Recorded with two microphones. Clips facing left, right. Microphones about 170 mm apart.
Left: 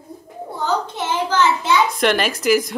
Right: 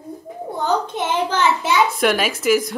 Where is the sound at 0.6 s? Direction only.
20° right (ahead or behind).